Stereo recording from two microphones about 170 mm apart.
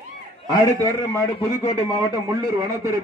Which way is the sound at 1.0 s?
35° left (ahead or behind).